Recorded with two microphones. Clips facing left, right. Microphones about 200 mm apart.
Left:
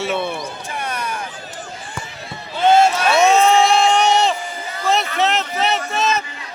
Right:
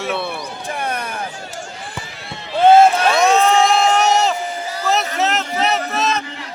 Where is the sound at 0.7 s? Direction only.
55° right (ahead or behind).